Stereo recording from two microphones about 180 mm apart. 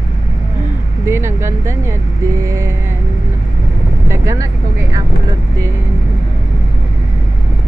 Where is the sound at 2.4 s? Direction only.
15° right (ahead or behind).